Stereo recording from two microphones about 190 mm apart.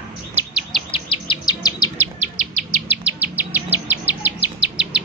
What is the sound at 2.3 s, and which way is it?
Insect, 45° right (ahead or behind).